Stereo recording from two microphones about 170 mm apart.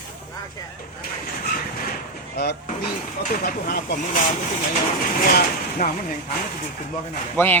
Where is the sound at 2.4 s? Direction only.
75° left (ahead or behind).